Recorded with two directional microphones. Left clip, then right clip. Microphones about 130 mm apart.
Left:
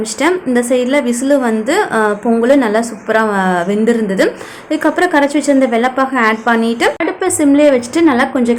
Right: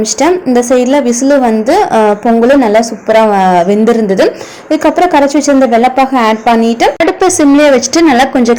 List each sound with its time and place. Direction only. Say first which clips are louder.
0.2 s a woman's voice: right 4 dB; 25° right (ahead or behind)